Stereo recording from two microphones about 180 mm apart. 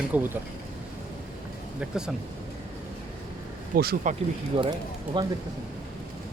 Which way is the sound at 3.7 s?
50° right (ahead or behind).